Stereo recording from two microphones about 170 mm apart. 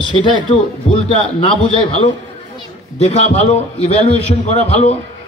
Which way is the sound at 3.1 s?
40° left (ahead or behind).